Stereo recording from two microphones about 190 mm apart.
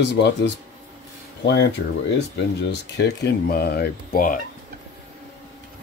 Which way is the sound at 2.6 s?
60° left (ahead or behind).